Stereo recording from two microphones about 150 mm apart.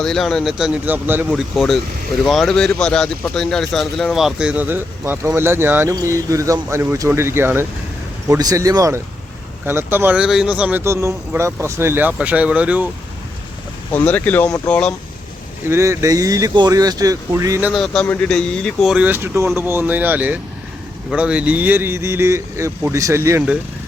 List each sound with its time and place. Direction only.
0.0 s speech: 5° left (ahead or behind); by 1.3 s 15° right (ahead or behind)
1.3 s speech: centre (ahead or behind)
13.9 s speech: 10° left (ahead or behind)
15.7 s speech: 20° right (ahead or behind)
17.7 s speech: centre (ahead or behind); by 23.4 s 20° right (ahead or behind)